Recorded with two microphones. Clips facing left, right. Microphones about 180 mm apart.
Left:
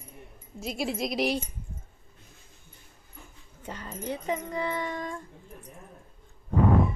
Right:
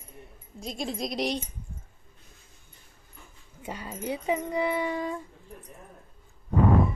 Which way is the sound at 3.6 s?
10° right (ahead or behind).